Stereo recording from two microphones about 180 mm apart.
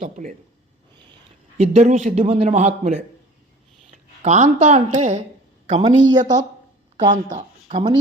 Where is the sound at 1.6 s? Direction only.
35° right (ahead or behind).